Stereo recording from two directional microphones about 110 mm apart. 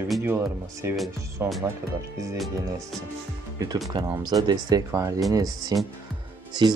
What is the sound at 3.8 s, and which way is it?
Speech, 30° right (ahead or behind).